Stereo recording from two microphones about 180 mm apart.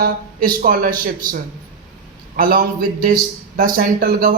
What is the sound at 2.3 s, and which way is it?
A man's voice, 55° right (ahead or behind).